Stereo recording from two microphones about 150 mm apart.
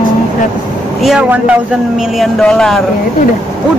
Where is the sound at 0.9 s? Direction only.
Centre (ahead or behind).